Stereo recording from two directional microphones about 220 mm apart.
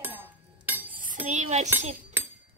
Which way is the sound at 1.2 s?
30° right (ahead or behind).